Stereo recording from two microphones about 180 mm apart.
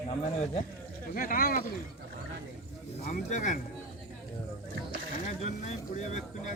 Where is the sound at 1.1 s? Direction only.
50° left (ahead or behind).